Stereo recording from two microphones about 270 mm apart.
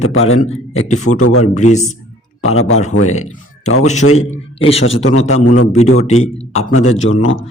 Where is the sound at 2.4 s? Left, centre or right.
Left.